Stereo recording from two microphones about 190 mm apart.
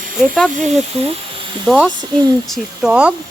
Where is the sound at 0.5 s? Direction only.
35° right (ahead or behind).